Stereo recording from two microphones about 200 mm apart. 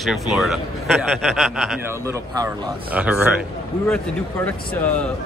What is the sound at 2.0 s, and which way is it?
Speech, 15° right (ahead or behind).